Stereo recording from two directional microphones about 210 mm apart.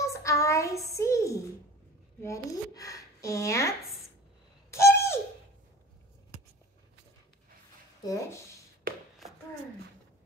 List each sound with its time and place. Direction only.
0.0 s child singing: 15° left (ahead or behind)
2.2 s speech: 15° left (ahead or behind)
4.6 s bird: 15° left (ahead or behind)
8.0 s speech: 15° left (ahead or behind)
8.9 s a sound: 45° right (ahead or behind)